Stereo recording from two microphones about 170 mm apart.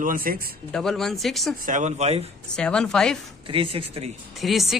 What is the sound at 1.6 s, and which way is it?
Speech, 45° right (ahead or behind).